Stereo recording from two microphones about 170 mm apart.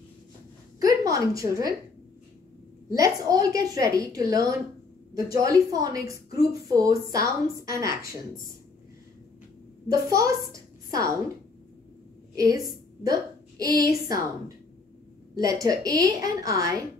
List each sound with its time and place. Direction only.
0.7 s a sound: 20° right (ahead or behind)
2.9 s a woman's voice: 20° right (ahead or behind)
9.8 s a woman's voice: 20° right (ahead or behind)
12.4 s a woman's voice: 20° right (ahead or behind)
15.3 s a woman's voice: 20° right (ahead or behind)